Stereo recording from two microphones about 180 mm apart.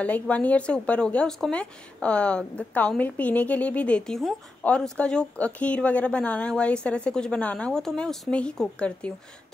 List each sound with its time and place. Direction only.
0.0 s speech: 10° left (ahead or behind)